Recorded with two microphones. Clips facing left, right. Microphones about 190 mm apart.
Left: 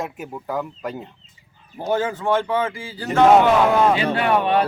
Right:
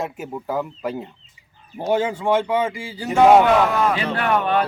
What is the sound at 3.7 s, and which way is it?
Speech, 25° left (ahead or behind).